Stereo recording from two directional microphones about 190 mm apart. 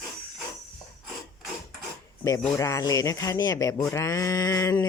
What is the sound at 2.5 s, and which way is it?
Speech, 15° left (ahead or behind).